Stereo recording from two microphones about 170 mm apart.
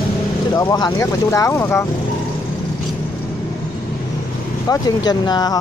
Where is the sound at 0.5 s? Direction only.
20° left (ahead or behind).